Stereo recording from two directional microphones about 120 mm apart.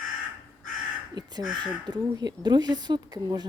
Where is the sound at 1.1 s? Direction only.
35° right (ahead or behind).